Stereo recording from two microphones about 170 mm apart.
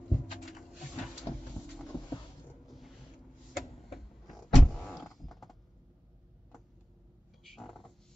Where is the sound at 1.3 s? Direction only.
25° left (ahead or behind).